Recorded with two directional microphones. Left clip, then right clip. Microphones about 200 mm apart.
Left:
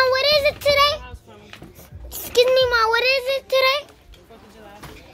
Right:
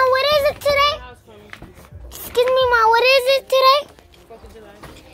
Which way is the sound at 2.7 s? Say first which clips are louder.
Right 4 dB; 10° right (ahead or behind).